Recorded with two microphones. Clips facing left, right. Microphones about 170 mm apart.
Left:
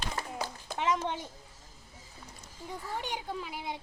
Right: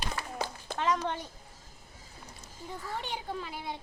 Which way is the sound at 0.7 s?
15° left (ahead or behind).